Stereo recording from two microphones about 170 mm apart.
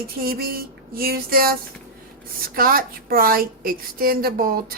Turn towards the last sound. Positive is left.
turn(degrees=-60)  # may be behind; listen again after turning